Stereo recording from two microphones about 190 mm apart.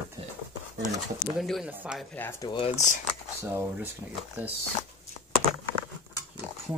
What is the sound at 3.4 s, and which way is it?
Speech, 10° right (ahead or behind).